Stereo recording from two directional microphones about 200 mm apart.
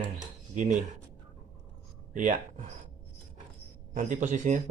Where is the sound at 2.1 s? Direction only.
40° right (ahead or behind).